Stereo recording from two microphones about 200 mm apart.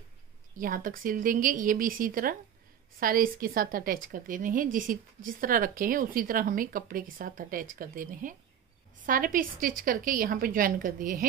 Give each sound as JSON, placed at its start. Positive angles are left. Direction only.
{"t": 0.6, "sound": "speech", "side_deg": -45}